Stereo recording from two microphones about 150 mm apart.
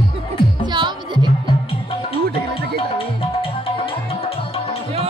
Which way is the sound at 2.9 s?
35° left (ahead or behind).